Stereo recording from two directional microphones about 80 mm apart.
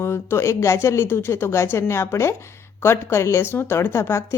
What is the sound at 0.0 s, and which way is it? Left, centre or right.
A woman's voice, left.